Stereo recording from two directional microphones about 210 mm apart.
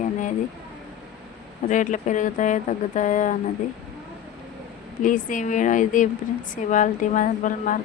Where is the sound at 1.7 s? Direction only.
35° left (ahead or behind).